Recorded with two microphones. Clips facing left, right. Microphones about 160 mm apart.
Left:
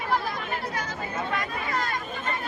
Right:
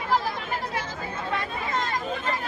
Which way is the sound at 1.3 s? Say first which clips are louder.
Right 4 dB; 25° right (ahead or behind).